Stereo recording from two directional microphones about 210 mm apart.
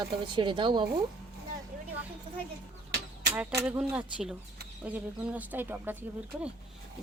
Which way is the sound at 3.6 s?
5° right (ahead or behind).